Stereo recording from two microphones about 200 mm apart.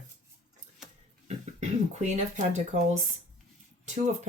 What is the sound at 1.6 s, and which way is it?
Speech, 35° right (ahead or behind).